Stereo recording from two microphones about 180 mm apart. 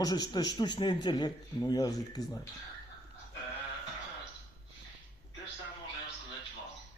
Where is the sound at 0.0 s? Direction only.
20° left (ahead or behind).